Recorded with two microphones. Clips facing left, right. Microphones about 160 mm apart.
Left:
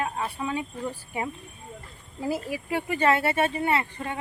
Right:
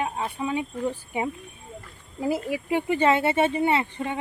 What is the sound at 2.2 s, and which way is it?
Speech, 20° right (ahead or behind).